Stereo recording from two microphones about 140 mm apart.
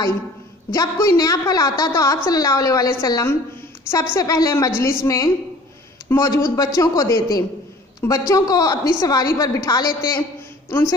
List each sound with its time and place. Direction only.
0.7 s a woman's voice: 25° left (ahead or behind)